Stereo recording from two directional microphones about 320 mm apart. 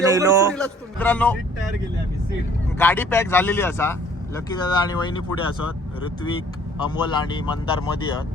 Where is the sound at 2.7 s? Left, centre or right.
Centre.